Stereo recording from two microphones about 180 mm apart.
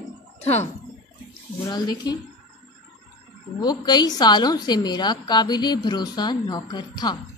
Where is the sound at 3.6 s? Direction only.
25° left (ahead or behind).